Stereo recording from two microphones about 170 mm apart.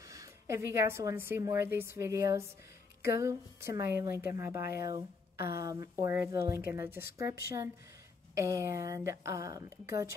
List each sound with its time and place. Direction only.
0.1 s a woman's voice: 20° right (ahead or behind)